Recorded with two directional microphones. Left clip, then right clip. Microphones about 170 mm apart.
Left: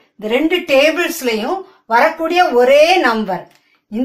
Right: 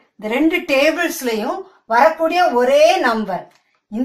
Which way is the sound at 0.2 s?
15° left (ahead or behind).